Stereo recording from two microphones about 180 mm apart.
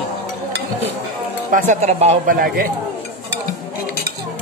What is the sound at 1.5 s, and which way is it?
Speech, 45° right (ahead or behind).